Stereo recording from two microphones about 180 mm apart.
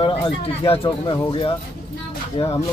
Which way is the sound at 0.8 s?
25° left (ahead or behind).